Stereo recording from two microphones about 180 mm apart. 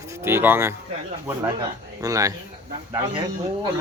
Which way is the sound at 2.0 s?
20° right (ahead or behind).